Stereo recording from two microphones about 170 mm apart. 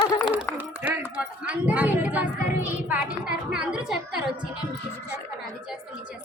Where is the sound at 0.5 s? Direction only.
10° right (ahead or behind).